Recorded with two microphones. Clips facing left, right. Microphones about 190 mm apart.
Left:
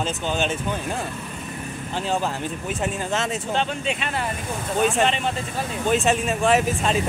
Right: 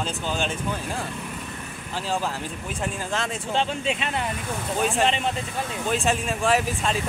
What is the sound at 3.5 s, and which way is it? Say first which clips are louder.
Speech: right 2 dB; 25° right (ahead or behind).